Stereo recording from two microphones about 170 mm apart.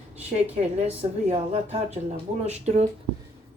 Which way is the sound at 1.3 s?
35° right (ahead or behind).